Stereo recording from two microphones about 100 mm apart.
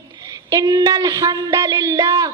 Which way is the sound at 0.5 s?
40° right (ahead or behind).